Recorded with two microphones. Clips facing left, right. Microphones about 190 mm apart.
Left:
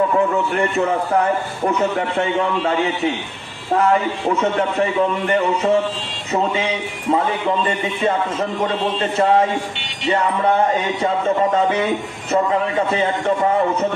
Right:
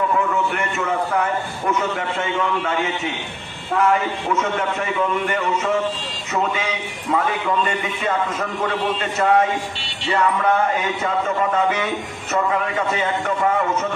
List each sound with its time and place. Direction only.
1.7 s a man's voice: 35° left (ahead or behind)
4.3 s a man's voice: 35° left (ahead or behind)